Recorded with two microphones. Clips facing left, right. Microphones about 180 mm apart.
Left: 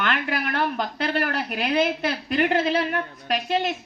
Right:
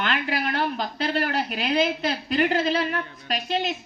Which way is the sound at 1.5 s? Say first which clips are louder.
Left 3 dB; 55° left (ahead or behind).